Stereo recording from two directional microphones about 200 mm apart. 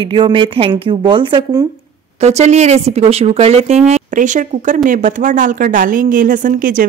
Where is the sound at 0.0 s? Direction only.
25° right (ahead or behind).